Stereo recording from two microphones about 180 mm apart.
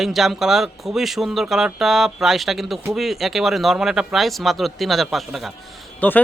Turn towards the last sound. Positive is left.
turn(degrees=10)  # may be behind; listen again after turning